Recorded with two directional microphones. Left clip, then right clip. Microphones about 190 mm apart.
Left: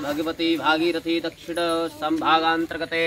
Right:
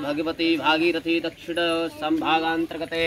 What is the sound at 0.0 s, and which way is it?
Speech, 15° right (ahead or behind).